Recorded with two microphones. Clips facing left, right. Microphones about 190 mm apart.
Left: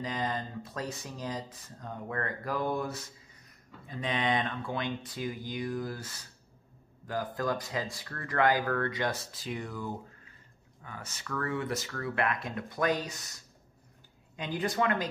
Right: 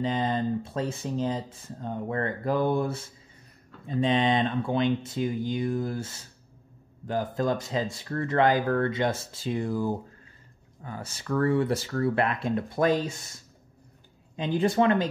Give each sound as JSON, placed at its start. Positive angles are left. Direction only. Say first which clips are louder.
{"t": 0.0, "sound": "speech", "louder": "right 7 dB", "side_deg": -25}